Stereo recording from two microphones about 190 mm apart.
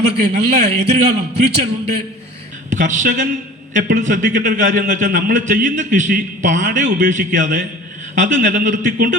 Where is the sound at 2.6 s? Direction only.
40° right (ahead or behind).